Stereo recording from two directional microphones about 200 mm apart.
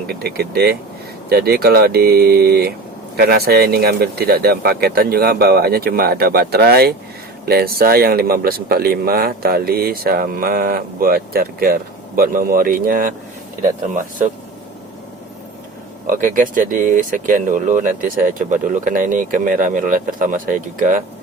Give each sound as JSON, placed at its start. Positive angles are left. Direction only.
{"t": 0.1, "sound": "speech", "side_deg": -50}
{"t": 16.0, "sound": "speech", "side_deg": -40}